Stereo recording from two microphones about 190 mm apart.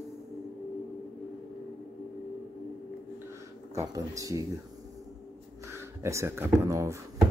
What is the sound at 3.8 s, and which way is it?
Speech, 15° right (ahead or behind).